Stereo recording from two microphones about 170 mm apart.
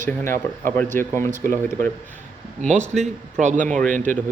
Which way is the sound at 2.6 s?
45° right (ahead or behind).